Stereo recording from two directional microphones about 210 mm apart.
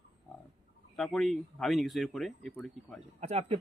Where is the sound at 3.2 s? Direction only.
30° right (ahead or behind).